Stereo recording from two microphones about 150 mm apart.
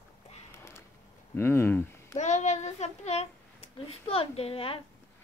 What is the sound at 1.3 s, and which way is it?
Speech, 15° left (ahead or behind).